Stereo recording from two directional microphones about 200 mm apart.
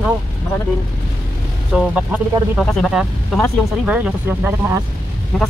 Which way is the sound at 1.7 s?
5° right (ahead or behind).